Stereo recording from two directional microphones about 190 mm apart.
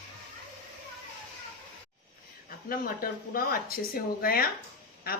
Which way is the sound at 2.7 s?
50° left (ahead or behind).